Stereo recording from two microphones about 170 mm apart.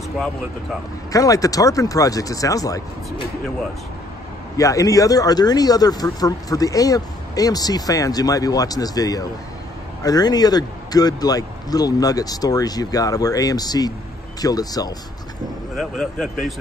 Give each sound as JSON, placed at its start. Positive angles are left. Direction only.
{"t": 1.1, "sound": "speech", "side_deg": 20}
{"t": 4.6, "sound": "speech", "side_deg": 20}
{"t": 15.7, "sound": "speech", "side_deg": 0}